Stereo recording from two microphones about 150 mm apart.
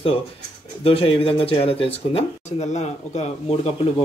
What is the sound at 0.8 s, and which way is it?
Speech, 40° left (ahead or behind).